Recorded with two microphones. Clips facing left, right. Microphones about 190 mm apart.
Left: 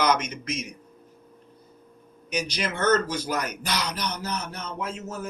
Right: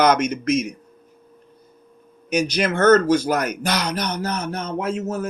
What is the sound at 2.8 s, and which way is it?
Speech, 70° right (ahead or behind).